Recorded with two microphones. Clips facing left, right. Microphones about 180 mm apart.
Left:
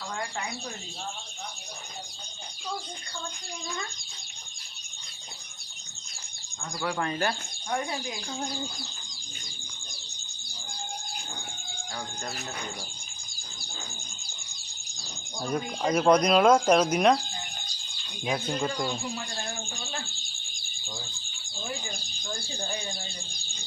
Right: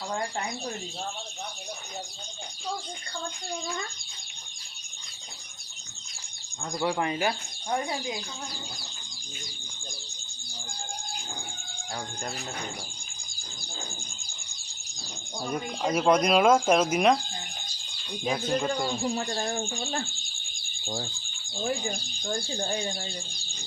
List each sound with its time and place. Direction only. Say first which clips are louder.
6.7 s speech: right 2 dB; 20° right (ahead or behind)
15.4 s speech: left 1 dB; 5° right (ahead or behind)
18.3 s speech: right 2 dB; centre (ahead or behind)
19.1 s speech: right 6 dB; 50° right (ahead or behind)